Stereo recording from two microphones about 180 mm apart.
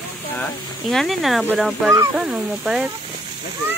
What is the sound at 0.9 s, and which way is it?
Speech, centre (ahead or behind).